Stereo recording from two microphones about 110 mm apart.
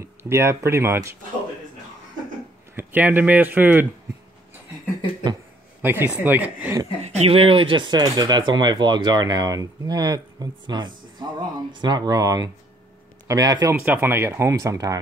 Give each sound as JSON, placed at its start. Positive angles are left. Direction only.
{"t": 0.0, "sound": "speech", "side_deg": -25}
{"t": 2.7, "sound": "speech", "side_deg": -20}
{"t": 5.8, "sound": "a sound", "side_deg": -15}
{"t": 6.1, "sound": "speech", "side_deg": -15}
{"t": 7.2, "sound": "speech", "side_deg": -60}
{"t": 13.7, "sound": "speech", "side_deg": -15}